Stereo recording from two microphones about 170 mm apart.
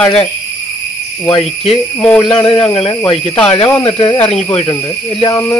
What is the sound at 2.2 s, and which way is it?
Speech, 30° left (ahead or behind).